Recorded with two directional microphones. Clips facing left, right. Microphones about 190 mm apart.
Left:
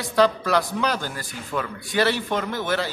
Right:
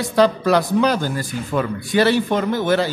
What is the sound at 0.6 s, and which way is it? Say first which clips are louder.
A man's voice: right 7 dB; 25° right (ahead or behind).